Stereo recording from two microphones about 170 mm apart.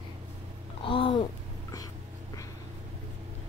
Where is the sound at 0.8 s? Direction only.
30° left (ahead or behind).